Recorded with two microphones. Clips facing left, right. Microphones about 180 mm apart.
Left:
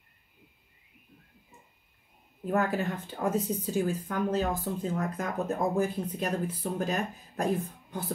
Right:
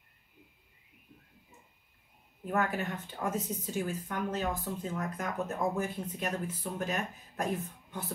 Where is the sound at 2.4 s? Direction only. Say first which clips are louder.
Left 4 dB; 35° left (ahead or behind).